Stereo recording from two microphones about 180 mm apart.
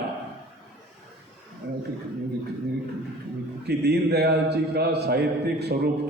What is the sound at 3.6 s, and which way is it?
A man's voice, 65° right (ahead or behind).